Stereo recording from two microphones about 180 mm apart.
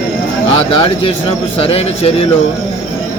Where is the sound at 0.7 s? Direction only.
30° left (ahead or behind).